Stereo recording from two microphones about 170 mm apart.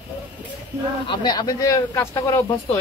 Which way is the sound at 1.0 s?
25° left (ahead or behind).